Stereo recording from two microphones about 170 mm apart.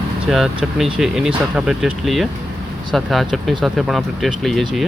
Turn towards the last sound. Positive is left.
turn(degrees=0)  # may be behind; listen again after turning